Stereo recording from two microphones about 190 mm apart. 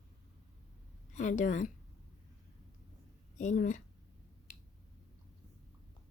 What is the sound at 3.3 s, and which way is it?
Speech, 40° left (ahead or behind).